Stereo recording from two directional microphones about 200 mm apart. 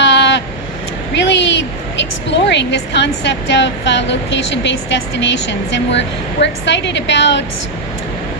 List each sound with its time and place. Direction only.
0.0 s vehicle: 60° left (ahead or behind)
1.1 s a woman's voice: 60° left (ahead or behind)